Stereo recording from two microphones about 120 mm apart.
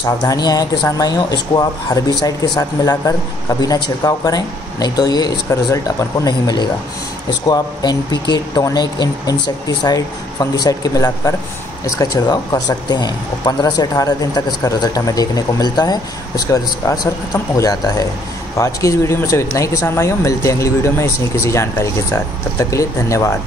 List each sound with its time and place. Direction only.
0.0 s speech: 35° left (ahead or behind)